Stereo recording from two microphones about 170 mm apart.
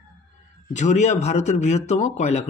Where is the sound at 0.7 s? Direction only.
45° left (ahead or behind).